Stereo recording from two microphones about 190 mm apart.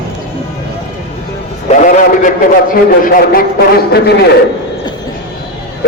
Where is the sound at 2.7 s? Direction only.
50° left (ahead or behind).